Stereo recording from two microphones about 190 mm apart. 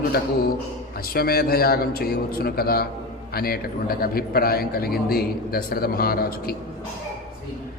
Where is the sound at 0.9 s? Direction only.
50° left (ahead or behind).